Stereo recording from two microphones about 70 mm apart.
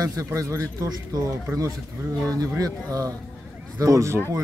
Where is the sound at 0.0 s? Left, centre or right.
Right.